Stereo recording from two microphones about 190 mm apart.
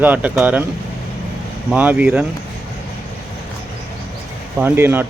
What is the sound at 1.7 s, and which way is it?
Speech, 10° right (ahead or behind).